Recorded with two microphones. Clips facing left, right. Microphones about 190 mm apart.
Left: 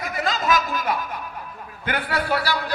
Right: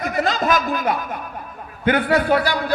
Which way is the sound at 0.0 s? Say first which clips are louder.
Right 5 dB; 45° right (ahead or behind).